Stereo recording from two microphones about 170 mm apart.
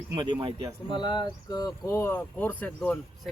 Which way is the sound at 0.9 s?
25° left (ahead or behind).